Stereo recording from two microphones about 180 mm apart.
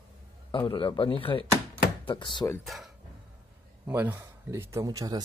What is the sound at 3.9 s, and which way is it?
A man's voice, 10° right (ahead or behind).